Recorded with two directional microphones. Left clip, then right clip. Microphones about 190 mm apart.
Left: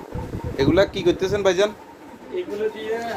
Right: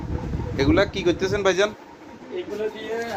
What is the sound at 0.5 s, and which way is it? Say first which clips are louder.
Speech: left 2 dB; 10° left (ahead or behind).